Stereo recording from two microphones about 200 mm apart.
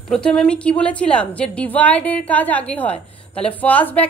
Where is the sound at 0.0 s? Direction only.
5° left (ahead or behind).